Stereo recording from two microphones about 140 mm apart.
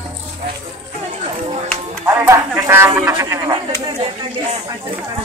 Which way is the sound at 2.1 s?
15° right (ahead or behind).